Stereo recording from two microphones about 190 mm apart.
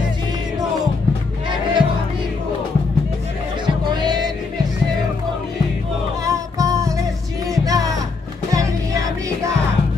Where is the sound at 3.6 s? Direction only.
25° right (ahead or behind).